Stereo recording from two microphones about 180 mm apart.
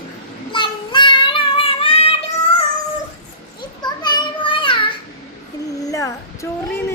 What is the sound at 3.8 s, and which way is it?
Children playing, 25° left (ahead or behind).